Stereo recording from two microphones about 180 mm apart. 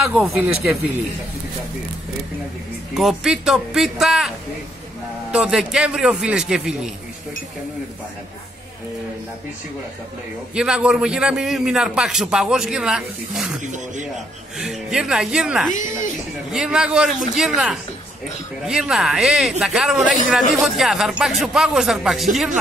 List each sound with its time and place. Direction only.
0.1 s speech: 5° right (ahead or behind)
2.9 s a man's voice: centre (ahead or behind)
5.3 s a man's voice: 5° right (ahead or behind)
10.5 s a man's voice: 5° right (ahead or behind)
13.6 s speech: 45° right (ahead or behind)
14.6 s a man's voice: centre (ahead or behind)